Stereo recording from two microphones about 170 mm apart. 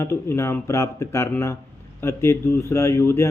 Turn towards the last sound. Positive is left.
turn(degrees=15)  # may be behind; listen again after turning